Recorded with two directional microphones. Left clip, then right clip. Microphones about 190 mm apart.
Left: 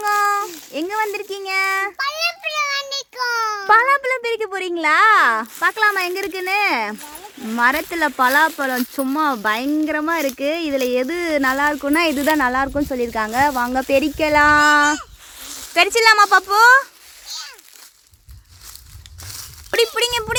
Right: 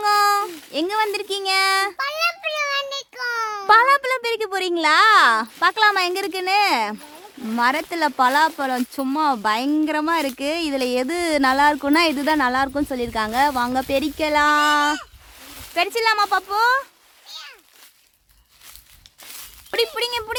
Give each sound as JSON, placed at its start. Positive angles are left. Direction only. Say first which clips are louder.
{"t": 0.0, "sound": "child singing", "louder": "even", "side_deg": 0}
{"t": 2.0, "sound": "child singing", "louder": "left 1 dB", "side_deg": -15}
{"t": 7.5, "sound": "speech", "louder": "left 3 dB", "side_deg": 10}
{"t": 11.9, "sound": "a child's voice", "louder": "left 1 dB", "side_deg": 10}
{"t": 19.2, "sound": "a sound", "louder": "left 4 dB", "side_deg": 35}
{"t": 19.7, "sound": "speech", "louder": "left 4 dB", "side_deg": 15}